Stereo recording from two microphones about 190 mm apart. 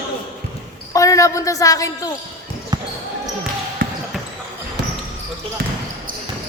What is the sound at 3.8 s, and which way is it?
Basketball bounce, 50° right (ahead or behind).